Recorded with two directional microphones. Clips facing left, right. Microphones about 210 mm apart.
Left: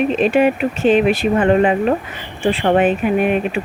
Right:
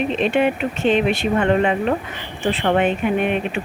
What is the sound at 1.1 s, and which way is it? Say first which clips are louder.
Speech: left 4 dB; 35° left (ahead or behind).